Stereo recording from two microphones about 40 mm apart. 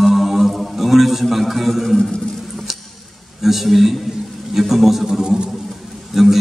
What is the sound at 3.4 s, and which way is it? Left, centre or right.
A man's voice, centre.